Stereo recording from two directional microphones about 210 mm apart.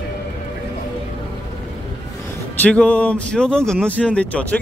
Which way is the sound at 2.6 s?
5° left (ahead or behind).